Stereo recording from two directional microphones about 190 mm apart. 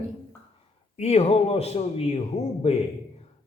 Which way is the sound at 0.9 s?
35° left (ahead or behind).